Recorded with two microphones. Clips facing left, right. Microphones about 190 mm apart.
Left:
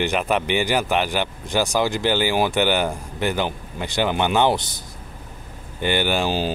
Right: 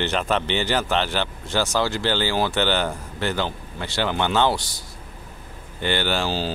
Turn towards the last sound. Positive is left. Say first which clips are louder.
# left 3 dB
turn(degrees=15)  # may be behind; listen again after turning